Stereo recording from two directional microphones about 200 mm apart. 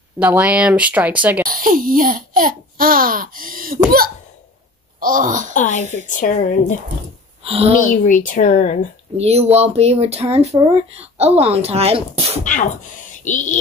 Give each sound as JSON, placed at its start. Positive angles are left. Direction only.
{"t": 0.2, "sound": "speech", "side_deg": -5}
{"t": 1.4, "sound": "speech", "side_deg": -45}
{"t": 5.5, "sound": "speech", "side_deg": 40}
{"t": 7.4, "sound": "a woman's voice", "side_deg": -30}
{"t": 7.8, "sound": "speech", "side_deg": 40}
{"t": 9.1, "sound": "speech", "side_deg": -30}
{"t": 13.2, "sound": "speech", "side_deg": 40}